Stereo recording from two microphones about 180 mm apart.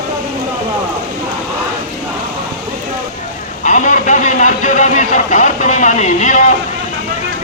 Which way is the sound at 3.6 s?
45° left (ahead or behind).